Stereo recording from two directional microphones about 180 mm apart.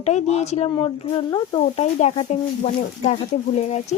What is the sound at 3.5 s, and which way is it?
Speech, 40° left (ahead or behind).